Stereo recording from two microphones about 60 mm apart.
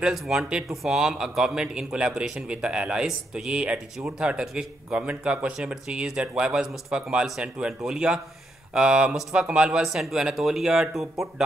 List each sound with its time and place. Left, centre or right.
0.0 s a man's voice: centre